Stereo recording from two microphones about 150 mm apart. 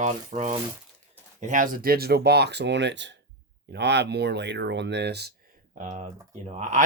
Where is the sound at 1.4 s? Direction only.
60° right (ahead or behind); by 2.6 s 90° right.